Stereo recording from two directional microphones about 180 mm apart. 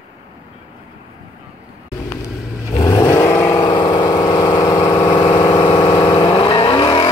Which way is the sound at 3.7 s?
25° left (ahead or behind).